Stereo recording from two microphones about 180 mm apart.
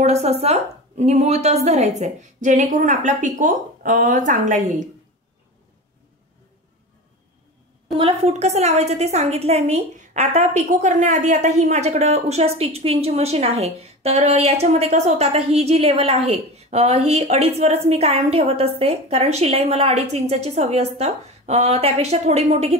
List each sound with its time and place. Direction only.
0.0 s a woman's voice: 35° right (ahead or behind)
8.0 s a woman's voice: 35° right (ahead or behind)